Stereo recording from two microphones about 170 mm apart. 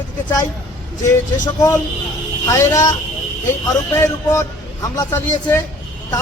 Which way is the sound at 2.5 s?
20° left (ahead or behind).